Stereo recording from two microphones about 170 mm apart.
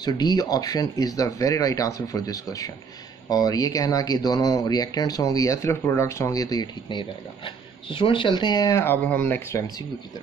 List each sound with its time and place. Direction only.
0.0 s speech: 25° left (ahead or behind)